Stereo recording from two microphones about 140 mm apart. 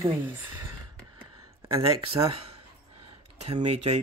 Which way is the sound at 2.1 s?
45° right (ahead or behind).